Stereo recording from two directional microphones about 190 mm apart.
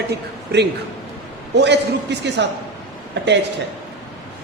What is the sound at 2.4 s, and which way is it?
Speech, 65° right (ahead or behind).